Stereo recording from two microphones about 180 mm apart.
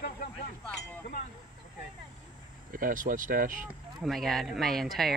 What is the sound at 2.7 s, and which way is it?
Speech, 50° right (ahead or behind).